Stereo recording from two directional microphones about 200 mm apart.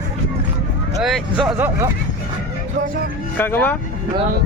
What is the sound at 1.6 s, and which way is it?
Speech, 10° right (ahead or behind).